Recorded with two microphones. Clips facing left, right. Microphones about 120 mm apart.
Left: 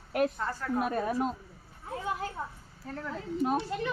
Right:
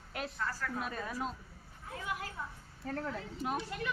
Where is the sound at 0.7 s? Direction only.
55° left (ahead or behind).